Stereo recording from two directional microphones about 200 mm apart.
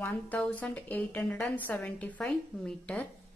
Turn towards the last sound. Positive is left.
turn(degrees=5)  # may be behind; listen again after turning